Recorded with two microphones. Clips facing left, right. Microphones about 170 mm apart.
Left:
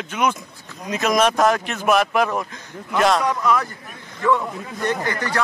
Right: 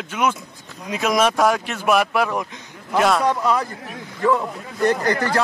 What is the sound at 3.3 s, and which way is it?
Speech, 30° right (ahead or behind).